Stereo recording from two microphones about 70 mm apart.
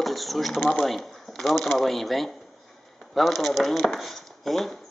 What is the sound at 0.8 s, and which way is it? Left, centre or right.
Speech, centre.